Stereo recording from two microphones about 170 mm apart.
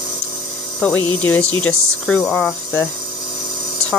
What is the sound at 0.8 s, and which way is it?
Speech, 10° left (ahead or behind).